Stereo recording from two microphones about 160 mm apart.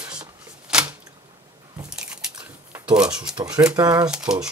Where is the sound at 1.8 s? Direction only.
5° right (ahead or behind).